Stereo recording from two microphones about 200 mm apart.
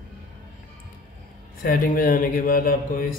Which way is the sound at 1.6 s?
45° left (ahead or behind).